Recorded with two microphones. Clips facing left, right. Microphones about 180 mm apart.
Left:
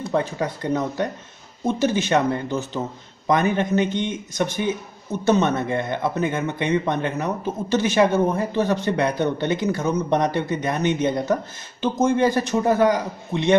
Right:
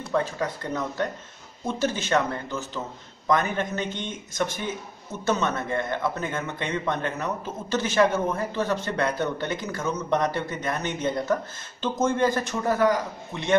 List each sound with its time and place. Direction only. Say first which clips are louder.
0.1 s a man's voice: left 2 dB; 20° left (ahead or behind)